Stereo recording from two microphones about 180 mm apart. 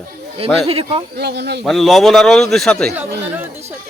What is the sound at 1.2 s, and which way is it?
Speech, 65° right (ahead or behind).